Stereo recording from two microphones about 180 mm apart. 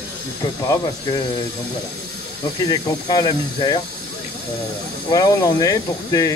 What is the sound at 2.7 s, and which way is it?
A man's voice, 20° left (ahead or behind).